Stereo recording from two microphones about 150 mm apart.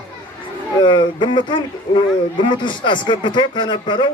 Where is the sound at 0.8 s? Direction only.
30° left (ahead or behind).